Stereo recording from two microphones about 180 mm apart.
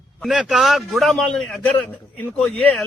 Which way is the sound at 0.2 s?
Centre (ahead or behind).